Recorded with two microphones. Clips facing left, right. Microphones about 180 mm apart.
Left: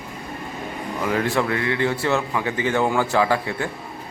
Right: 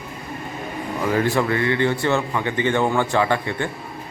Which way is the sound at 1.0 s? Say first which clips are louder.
Right 2 dB; centre (ahead or behind).